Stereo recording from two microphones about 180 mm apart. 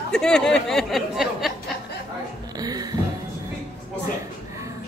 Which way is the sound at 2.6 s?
20° right (ahead or behind).